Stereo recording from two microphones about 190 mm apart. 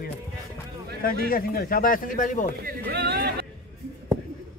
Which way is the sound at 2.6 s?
55° right (ahead or behind).